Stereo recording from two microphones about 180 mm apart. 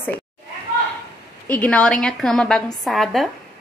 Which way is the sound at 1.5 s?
10° left (ahead or behind).